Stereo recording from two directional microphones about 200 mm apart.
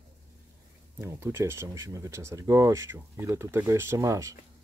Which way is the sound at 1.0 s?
10° right (ahead or behind).